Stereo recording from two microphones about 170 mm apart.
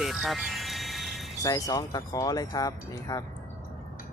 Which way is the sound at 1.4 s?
20° left (ahead or behind).